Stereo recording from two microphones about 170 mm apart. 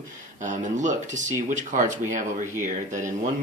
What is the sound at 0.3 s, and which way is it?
Speech, 45° right (ahead or behind).